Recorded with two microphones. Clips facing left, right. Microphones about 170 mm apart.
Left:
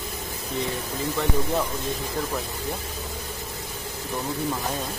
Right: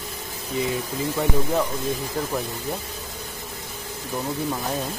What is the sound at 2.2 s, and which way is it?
Speech, 5° right (ahead or behind).